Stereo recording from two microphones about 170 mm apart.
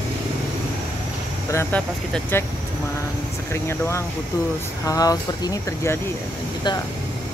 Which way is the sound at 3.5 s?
15° left (ahead or behind).